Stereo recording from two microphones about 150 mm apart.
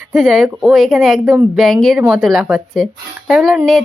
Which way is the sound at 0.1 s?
Centre (ahead or behind).